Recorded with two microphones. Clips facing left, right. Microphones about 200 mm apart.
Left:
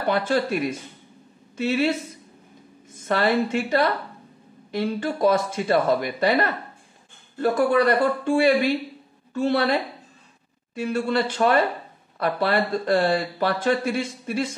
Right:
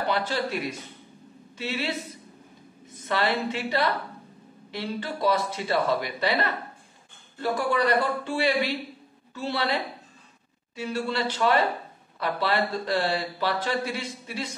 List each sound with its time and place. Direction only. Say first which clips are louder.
0.0 s speech: left 5 dB; 50° left (ahead or behind)
3.0 s speech: left 5 dB; 50° left (ahead or behind)